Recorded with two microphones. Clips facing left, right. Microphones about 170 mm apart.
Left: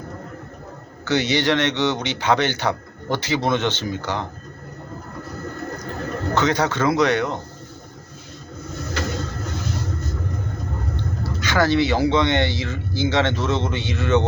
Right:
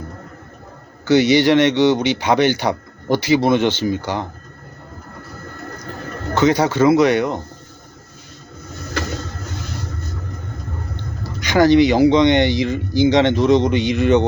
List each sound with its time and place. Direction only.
1.0 s speech: 10° right (ahead or behind)
6.3 s speech: 10° right (ahead or behind)
11.3 s speech: 15° right (ahead or behind)